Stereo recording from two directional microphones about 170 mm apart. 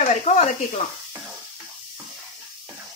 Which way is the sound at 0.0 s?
40° left (ahead or behind).